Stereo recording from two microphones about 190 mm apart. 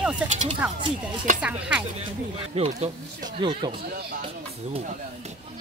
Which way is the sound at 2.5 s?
35° right (ahead or behind).